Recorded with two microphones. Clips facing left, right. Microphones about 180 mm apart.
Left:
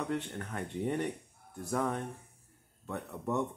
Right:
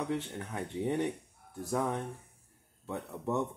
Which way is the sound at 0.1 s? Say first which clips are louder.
Even; 15° right (ahead or behind).